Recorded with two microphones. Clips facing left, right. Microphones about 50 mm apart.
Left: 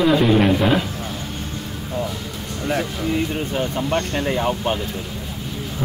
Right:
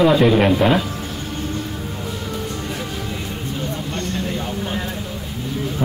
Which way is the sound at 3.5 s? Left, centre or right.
Left.